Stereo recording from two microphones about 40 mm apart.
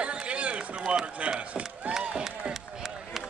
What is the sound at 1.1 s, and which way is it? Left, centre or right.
Speech, right.